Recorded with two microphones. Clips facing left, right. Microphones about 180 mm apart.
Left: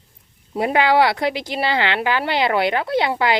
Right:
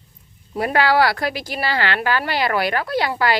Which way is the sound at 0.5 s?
20° left (ahead or behind).